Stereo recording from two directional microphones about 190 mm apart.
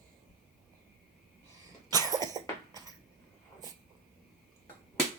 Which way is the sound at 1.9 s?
20° right (ahead or behind).